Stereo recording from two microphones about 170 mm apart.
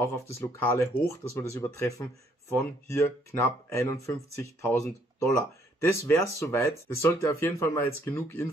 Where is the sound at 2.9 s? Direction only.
15° left (ahead or behind).